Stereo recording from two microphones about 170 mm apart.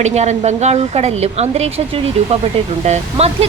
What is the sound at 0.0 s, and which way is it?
Speech, 40° right (ahead or behind).